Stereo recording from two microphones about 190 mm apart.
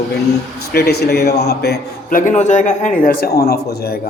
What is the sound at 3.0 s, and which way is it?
A man's voice, 50° left (ahead or behind).